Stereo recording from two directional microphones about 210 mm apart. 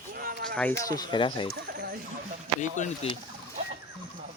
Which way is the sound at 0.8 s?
20° left (ahead or behind).